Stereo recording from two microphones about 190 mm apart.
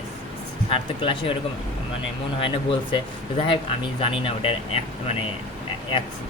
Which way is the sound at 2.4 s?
25° left (ahead or behind).